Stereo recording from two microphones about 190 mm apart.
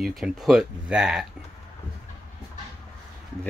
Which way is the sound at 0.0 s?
Centre (ahead or behind).